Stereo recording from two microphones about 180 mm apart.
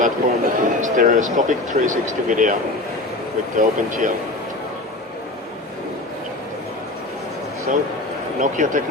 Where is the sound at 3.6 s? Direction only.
45° right (ahead or behind).